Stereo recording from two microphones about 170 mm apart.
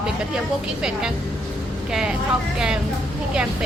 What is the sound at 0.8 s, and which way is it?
Speech, 5° right (ahead or behind).